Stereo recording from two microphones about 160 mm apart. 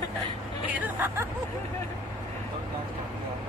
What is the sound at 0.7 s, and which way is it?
Speech, 15° right (ahead or behind).